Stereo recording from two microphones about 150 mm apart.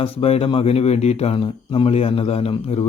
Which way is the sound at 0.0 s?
40° left (ahead or behind).